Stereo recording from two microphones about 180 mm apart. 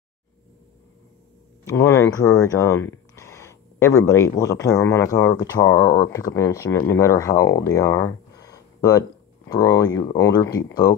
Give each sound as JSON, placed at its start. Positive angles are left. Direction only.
{"t": 1.6, "sound": "speech", "side_deg": 15}